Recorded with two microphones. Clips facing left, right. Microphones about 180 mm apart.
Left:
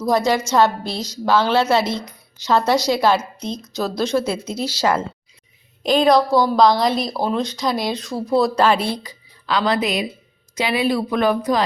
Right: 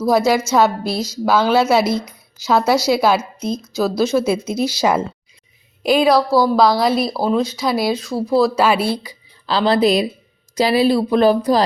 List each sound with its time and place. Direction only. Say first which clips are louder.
0.0 s a woman's voice: right 3 dB; 5° right (ahead or behind)
9.5 s speech: right 5 dB; 30° right (ahead or behind)